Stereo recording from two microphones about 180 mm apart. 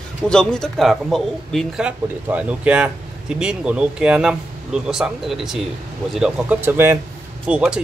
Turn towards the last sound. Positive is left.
turn(degrees=-5)  # may be behind; listen again after turning